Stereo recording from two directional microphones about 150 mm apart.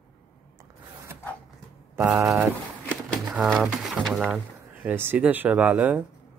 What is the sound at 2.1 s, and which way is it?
Speech, 15° right (ahead or behind).